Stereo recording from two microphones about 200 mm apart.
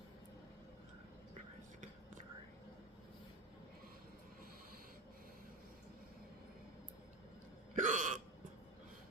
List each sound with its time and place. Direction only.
7.8 s burping: 40° right (ahead or behind)